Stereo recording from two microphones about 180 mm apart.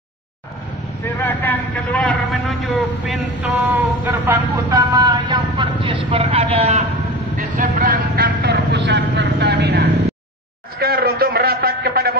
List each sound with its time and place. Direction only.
1.0 s a man's voice: 10° left (ahead or behind); by 6.8 s 35° right (ahead or behind)
7.3 s a man's voice: 45° right (ahead or behind); by 9.8 s 75° right (ahead or behind)
10.8 s a man's voice: 60° right (ahead or behind)